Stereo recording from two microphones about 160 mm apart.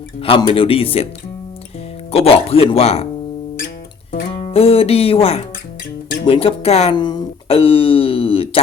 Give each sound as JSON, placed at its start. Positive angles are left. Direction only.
{"t": 0.2, "sound": "speech", "side_deg": 35}
{"t": 2.1, "sound": "speech", "side_deg": 35}
{"t": 4.3, "sound": "speech", "side_deg": 40}
{"t": 6.9, "sound": "speech", "side_deg": 25}
{"t": 7.4, "sound": "a sound", "side_deg": 35}